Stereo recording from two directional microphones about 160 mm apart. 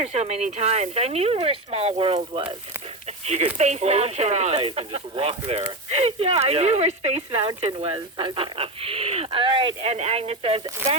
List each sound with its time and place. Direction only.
0.0 s speech: 40° right (ahead or behind)